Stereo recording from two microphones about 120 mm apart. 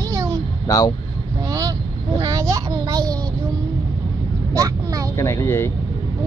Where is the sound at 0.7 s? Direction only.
35° left (ahead or behind).